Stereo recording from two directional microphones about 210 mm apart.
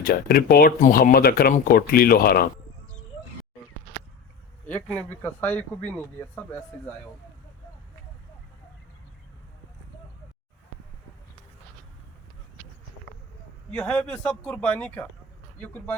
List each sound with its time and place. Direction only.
0.0 s speech: 45° left (ahead or behind)
4.6 s speech: 5° left (ahead or behind)
13.7 s speech: 5° left (ahead or behind)